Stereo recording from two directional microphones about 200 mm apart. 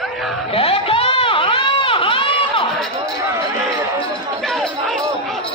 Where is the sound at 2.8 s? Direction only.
5° left (ahead or behind).